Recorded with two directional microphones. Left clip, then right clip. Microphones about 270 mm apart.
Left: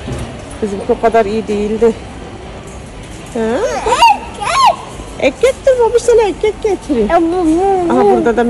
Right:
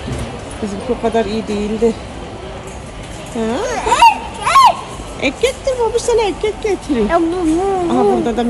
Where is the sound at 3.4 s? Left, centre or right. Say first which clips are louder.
Left 4 dB; centre.